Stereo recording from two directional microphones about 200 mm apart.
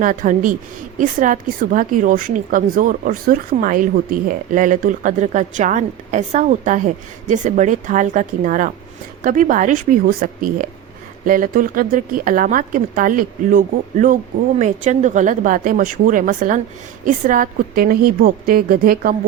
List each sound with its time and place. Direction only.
0.0 s a woman's voice: 40° right (ahead or behind)